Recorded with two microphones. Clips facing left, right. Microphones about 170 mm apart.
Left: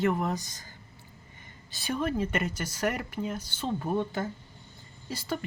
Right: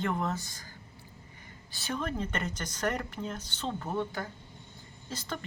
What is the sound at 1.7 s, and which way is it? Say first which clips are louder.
Speech: left 4 dB; 10° left (ahead or behind).